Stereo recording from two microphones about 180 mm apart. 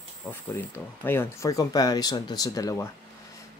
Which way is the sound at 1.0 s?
15° left (ahead or behind).